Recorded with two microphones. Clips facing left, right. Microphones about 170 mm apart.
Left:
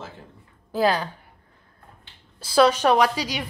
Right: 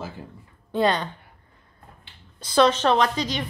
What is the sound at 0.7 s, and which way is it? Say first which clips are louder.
Speech: even; 5° left (ahead or behind).